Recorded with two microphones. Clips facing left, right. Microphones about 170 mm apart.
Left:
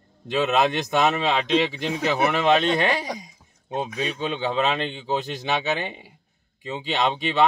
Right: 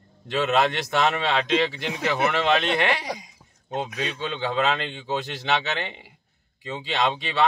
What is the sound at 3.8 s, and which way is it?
Speech, 15° left (ahead or behind).